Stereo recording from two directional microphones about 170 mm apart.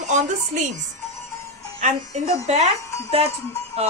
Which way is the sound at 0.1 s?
45° right (ahead or behind).